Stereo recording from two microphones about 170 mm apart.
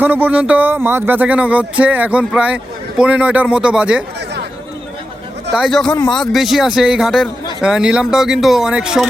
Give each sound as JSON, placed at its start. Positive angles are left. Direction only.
{"t": 0.0, "sound": "speech", "side_deg": -10}
{"t": 5.5, "sound": "speech", "side_deg": 0}